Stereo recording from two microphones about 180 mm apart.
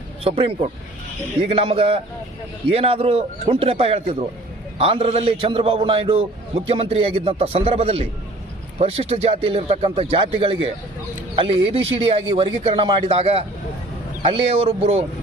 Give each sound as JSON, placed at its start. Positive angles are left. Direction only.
{"t": 0.3, "sound": "speech", "side_deg": -30}